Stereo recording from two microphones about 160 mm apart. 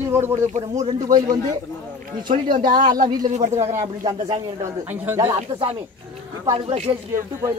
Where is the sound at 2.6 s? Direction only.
30° right (ahead or behind).